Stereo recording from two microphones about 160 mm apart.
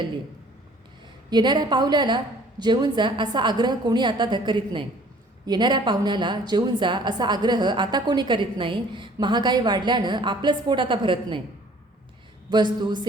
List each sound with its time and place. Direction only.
1.3 s a woman's voice: 25° right (ahead or behind)
12.5 s a woman's voice: 25° right (ahead or behind)